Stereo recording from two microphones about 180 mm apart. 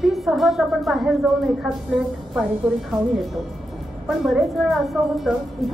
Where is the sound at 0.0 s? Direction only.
Centre (ahead or behind).